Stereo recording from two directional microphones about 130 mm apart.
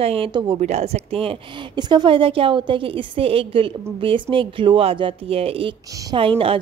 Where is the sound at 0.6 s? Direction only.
60° right (ahead or behind).